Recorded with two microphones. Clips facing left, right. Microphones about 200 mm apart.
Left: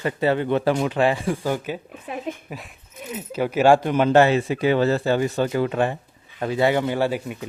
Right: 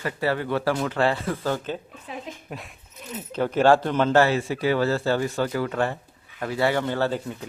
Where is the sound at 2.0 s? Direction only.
55° left (ahead or behind).